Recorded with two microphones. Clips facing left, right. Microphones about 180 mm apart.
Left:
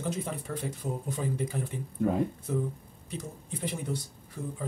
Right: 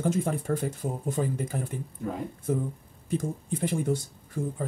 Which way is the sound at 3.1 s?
50° right (ahead or behind).